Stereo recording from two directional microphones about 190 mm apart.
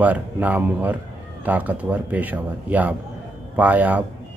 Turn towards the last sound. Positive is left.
turn(degrees=-10)  # may be behind; listen again after turning